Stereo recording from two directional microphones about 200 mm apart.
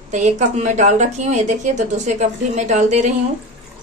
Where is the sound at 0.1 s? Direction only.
35° right (ahead or behind).